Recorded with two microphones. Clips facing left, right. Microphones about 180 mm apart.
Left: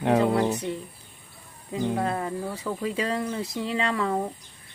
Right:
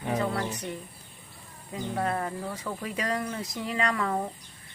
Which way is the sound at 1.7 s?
25° left (ahead or behind).